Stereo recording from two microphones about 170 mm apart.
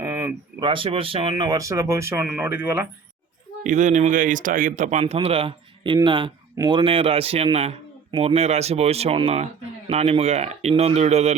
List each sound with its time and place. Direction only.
0.0 s a sound: 15° right (ahead or behind)
0.6 s speech: 30° right (ahead or behind); by 2.8 s 10° right (ahead or behind)
3.6 s a man's voice: 45° right (ahead or behind)